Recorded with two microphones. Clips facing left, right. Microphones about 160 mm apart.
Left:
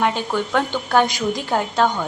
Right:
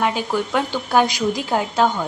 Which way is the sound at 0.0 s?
5° right (ahead or behind).